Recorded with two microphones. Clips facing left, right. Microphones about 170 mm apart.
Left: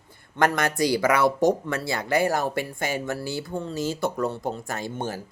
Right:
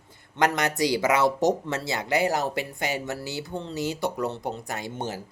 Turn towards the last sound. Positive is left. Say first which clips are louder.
# left 2 dB
turn(degrees=-20)  # may be behind; listen again after turning